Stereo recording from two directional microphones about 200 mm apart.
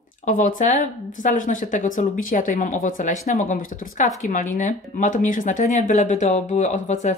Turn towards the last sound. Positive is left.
turn(degrees=35)  # may be behind; listen again after turning